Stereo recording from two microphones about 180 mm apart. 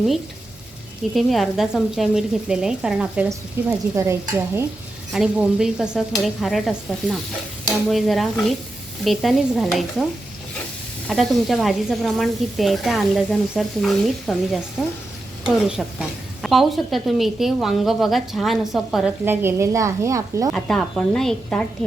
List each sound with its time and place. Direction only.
1.1 s a woman's voice: centre (ahead or behind)
3.2 s stir: 15° right (ahead or behind)
5.1 s a woman's voice: 5° right (ahead or behind)
11.1 s a woman's voice: centre (ahead or behind)
19.2 s stir: 10° right (ahead or behind)
20.5 s a woman's voice: 5° left (ahead or behind)